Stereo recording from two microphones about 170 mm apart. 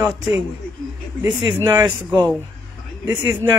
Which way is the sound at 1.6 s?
25° right (ahead or behind).